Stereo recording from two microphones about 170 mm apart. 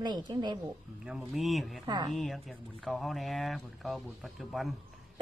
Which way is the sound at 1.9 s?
25° right (ahead or behind).